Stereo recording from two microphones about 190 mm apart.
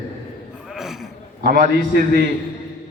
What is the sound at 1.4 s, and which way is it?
Speech, 55° right (ahead or behind).